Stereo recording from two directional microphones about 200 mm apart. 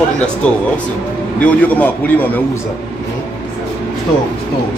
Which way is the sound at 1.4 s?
10° left (ahead or behind).